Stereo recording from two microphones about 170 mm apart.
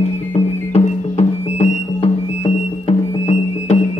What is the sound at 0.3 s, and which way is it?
Music, 40° left (ahead or behind).